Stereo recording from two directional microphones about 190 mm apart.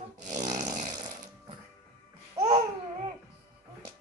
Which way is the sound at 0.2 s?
40° right (ahead or behind).